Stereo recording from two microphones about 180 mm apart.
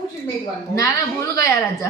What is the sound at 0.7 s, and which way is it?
Speech, 15° left (ahead or behind).